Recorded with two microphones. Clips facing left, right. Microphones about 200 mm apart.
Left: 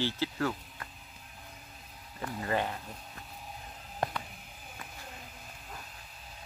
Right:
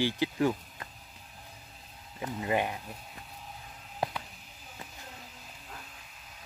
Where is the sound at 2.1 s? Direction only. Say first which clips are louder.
Right 2 dB; 15° right (ahead or behind).